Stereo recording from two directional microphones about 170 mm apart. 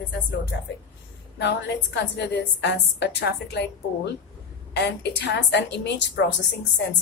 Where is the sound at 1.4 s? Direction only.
90° left.